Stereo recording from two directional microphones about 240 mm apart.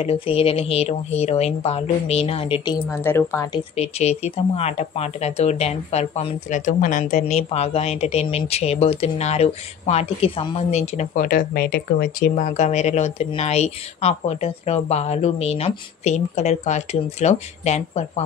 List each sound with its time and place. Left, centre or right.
0.0 s speech: left
3.7 s speech: left